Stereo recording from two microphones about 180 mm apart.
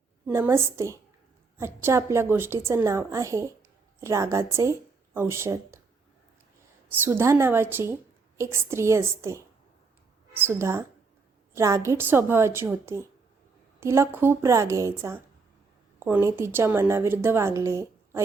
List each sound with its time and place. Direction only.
0.3 s a woman's voice: 10° right (ahead or behind)
6.9 s a woman's voice: 15° right (ahead or behind)